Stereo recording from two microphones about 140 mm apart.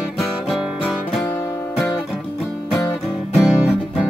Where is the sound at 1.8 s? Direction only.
Centre (ahead or behind).